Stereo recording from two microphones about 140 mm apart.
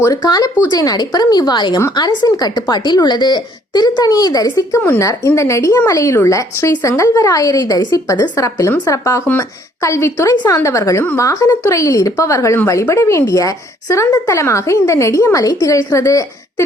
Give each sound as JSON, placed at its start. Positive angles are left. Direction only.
{"t": 0.0, "sound": "a woman's voice", "side_deg": 25}